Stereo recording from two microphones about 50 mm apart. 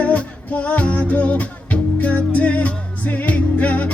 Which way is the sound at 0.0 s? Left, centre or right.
Left.